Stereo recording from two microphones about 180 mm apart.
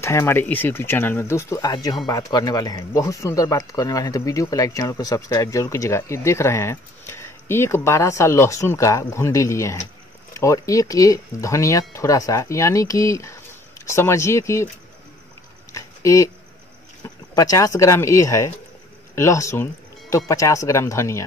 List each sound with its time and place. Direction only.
0.0 s speech: 15° left (ahead or behind)
15.7 s a sound: 15° left (ahead or behind)
17.4 s speech: 20° left (ahead or behind)